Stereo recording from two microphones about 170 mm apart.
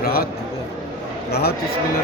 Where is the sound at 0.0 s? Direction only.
65° left (ahead or behind).